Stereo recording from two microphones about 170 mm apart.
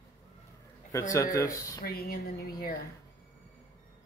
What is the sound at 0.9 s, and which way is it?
Speech, 20° left (ahead or behind).